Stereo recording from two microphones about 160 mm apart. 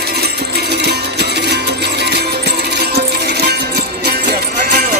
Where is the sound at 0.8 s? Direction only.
90° right.